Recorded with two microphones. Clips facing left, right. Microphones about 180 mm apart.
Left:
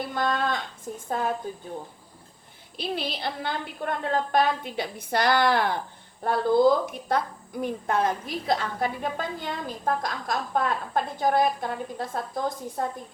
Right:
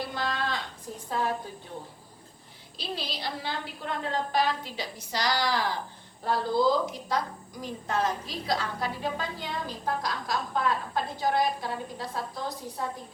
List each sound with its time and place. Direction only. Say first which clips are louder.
0.1 s a sound: left 5 dB; 50° left (ahead or behind)
0.9 s a woman's voice: left 6 dB; 55° left (ahead or behind)
2.7 s a woman's voice: left 5 dB; 55° left (ahead or behind)